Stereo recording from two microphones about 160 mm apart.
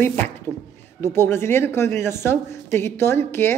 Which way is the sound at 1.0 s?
15° left (ahead or behind).